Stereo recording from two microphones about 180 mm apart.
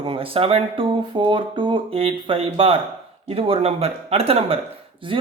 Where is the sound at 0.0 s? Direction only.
30° right (ahead or behind).